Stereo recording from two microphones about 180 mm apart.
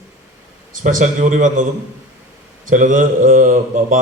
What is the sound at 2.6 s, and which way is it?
Speech, 45° right (ahead or behind).